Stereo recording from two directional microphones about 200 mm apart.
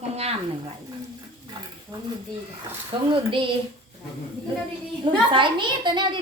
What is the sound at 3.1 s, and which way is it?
Speech, 25° right (ahead or behind).